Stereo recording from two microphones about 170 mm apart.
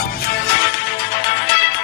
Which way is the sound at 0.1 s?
65° left (ahead or behind).